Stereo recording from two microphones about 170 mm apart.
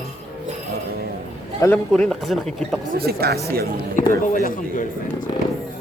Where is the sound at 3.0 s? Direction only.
65° right (ahead or behind).